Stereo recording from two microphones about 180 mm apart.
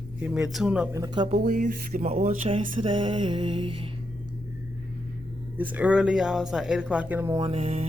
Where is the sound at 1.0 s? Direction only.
25° right (ahead or behind).